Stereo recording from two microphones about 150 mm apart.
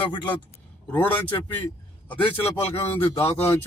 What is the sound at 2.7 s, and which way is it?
Speech, 40° left (ahead or behind).